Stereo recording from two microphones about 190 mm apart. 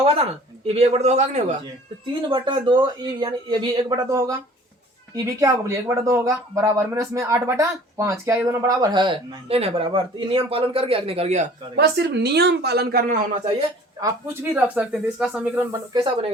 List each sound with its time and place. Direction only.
0.7 s a man's voice: 35° right (ahead or behind)
2.3 s speech: 25° right (ahead or behind)
11.8 s a woman's voice: 60° right (ahead or behind)
14.0 s speech: 10° right (ahead or behind)
15.9 s speech: 25° right (ahead or behind)